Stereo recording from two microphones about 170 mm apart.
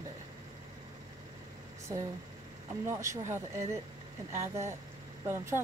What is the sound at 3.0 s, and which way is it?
Speech, 45° right (ahead or behind).